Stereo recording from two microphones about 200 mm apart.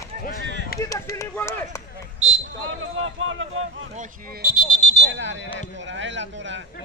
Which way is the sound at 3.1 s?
80° right.